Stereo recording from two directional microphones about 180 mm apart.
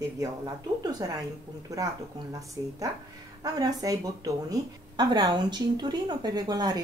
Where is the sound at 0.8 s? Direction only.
20° right (ahead or behind).